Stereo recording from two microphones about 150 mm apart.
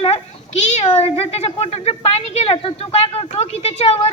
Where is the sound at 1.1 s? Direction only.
45° left (ahead or behind).